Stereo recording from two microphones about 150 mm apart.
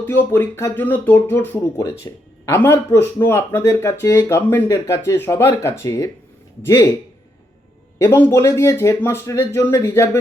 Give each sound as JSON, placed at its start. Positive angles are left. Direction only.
{"t": 0.0, "sound": "speech", "side_deg": 15}
{"t": 7.9, "sound": "speech", "side_deg": 15}